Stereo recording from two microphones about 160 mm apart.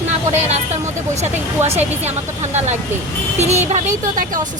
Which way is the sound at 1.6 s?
40° right (ahead or behind).